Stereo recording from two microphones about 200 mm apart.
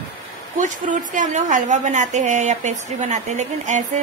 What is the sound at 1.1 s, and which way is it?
A woman's voice, 40° right (ahead or behind).